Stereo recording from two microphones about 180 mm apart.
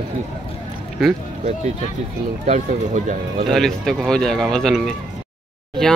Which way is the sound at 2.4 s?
40° right (ahead or behind).